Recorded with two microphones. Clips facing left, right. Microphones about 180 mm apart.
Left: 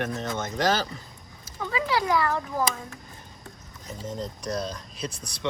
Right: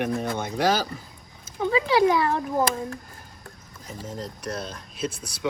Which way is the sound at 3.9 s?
Centre (ahead or behind).